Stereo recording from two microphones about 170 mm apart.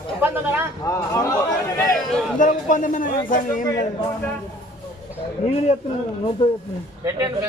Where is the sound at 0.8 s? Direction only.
20° left (ahead or behind).